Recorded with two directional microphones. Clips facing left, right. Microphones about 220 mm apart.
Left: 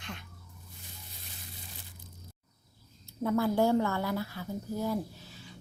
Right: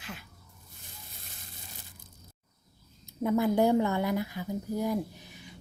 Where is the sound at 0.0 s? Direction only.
5° right (ahead or behind).